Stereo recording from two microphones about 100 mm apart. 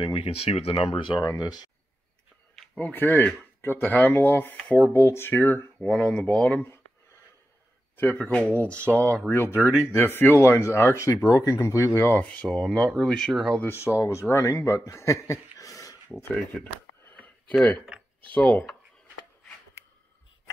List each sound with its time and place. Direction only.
0.0 s speech: 60° left (ahead or behind)
1.2 s speech: 40° left (ahead or behind)
2.5 s a sound: 5° left (ahead or behind)
2.8 s speech: 20° left (ahead or behind)
4.9 s speech: 25° left (ahead or behind)
7.9 s speech: 20° left (ahead or behind)
8.8 s speech: 25° right (ahead or behind)
9.3 s speech: 25° left (ahead or behind); by 13.6 s centre (ahead or behind)
13.6 s speech: 25° left (ahead or behind)
15.5 s a sound: 35° left (ahead or behind)
17.1 s a sound: 15° left (ahead or behind)
18.3 s speech: 15° left (ahead or behind)